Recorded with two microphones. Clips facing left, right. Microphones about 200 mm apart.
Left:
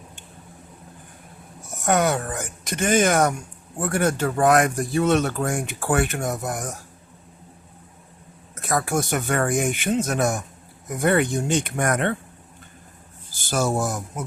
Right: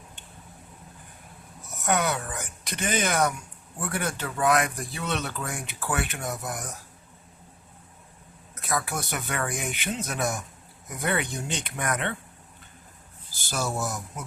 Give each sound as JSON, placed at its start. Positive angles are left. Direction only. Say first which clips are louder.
{"t": 1.8, "sound": "speech", "louder": "left 6 dB", "side_deg": 45}
{"t": 8.5, "sound": "speech", "louder": "left 7 dB", "side_deg": 45}
{"t": 13.4, "sound": "speech", "louder": "left 7 dB", "side_deg": 50}